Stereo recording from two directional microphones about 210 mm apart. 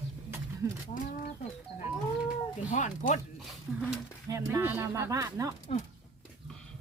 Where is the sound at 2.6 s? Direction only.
35° left (ahead or behind).